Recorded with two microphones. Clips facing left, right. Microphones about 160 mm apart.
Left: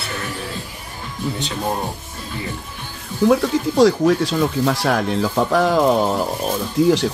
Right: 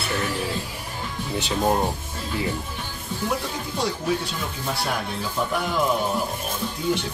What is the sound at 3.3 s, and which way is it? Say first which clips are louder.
Speech: left 13 dB; 90° left.